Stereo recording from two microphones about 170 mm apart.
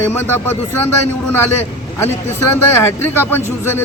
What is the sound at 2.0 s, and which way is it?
A man's voice, 15° left (ahead or behind).